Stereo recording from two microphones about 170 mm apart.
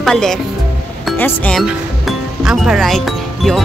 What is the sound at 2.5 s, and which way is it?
Speech, centre (ahead or behind).